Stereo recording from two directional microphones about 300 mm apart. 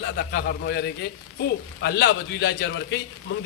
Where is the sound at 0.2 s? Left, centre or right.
Left.